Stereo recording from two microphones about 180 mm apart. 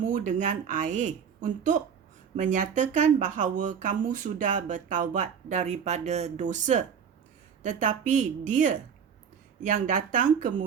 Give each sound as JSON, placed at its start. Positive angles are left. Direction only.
{"t": 0.0, "sound": "speech", "side_deg": -45}